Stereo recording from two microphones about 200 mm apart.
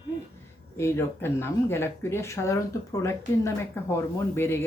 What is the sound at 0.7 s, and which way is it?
Speech, 15° left (ahead or behind).